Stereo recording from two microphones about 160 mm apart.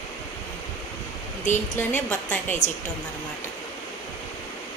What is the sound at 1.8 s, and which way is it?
Speech, 10° left (ahead or behind).